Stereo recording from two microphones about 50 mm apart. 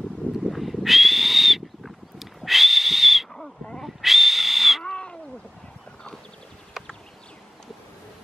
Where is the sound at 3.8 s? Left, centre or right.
Centre.